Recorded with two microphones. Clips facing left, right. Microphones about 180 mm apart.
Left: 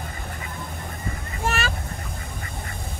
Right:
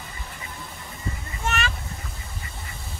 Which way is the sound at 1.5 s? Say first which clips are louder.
Left 1 dB; 35° left (ahead or behind).